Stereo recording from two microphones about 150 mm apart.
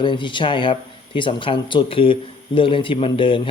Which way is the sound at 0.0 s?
30° left (ahead or behind).